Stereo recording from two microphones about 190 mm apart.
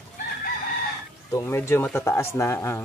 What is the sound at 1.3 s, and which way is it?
Speech, 15° left (ahead or behind).